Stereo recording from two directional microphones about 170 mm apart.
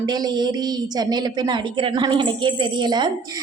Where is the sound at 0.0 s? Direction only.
25° right (ahead or behind).